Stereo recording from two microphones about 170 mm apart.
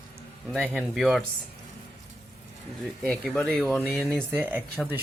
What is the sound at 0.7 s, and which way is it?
Speech, centre (ahead or behind).